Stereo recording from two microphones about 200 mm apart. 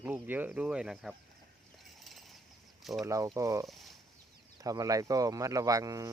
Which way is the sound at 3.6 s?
Centre (ahead or behind).